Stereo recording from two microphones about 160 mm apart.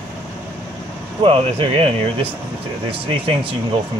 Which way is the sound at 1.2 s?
35° right (ahead or behind).